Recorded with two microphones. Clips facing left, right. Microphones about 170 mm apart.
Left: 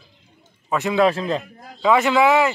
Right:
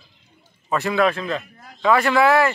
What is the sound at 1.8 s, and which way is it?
Speech, 15° left (ahead or behind).